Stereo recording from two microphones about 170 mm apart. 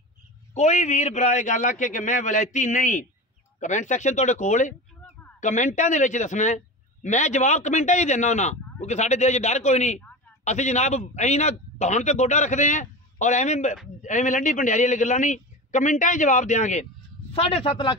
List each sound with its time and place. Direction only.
0.6 s a man's voice: 45° left (ahead or behind)